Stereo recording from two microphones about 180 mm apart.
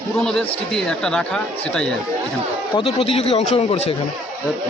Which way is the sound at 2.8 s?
30° left (ahead or behind).